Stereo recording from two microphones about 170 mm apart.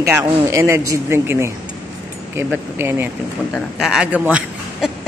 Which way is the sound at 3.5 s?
Centre (ahead or behind).